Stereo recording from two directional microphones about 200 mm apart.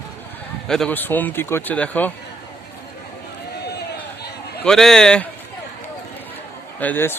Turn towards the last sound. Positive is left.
turn(degrees=10)  # may be behind; listen again after turning